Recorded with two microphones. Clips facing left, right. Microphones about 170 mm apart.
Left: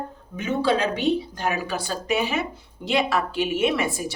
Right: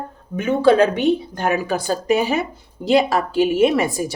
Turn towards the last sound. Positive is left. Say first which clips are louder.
# right 6 dB
turn(degrees=-40)  # may be behind; listen again after turning